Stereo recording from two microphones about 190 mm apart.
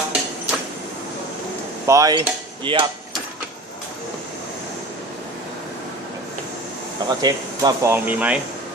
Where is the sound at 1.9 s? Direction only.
20° right (ahead or behind).